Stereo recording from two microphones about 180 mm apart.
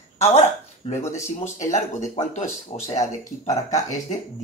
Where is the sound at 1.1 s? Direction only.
40° left (ahead or behind).